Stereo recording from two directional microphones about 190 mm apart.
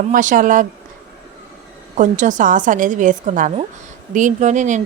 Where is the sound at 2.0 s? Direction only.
40° right (ahead or behind).